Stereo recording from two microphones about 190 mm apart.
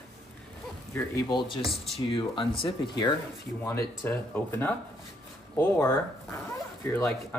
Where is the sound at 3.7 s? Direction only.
10° left (ahead or behind).